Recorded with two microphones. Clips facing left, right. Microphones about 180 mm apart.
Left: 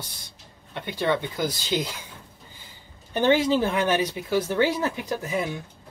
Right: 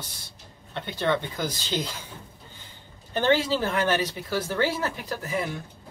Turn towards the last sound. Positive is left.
turn(degrees=20)  # may be behind; listen again after turning